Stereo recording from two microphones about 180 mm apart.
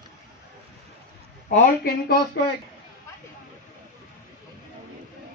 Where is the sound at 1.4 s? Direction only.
55° left (ahead or behind).